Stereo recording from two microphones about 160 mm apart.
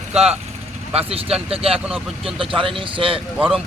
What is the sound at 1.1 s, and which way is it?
Speech, 35° right (ahead or behind).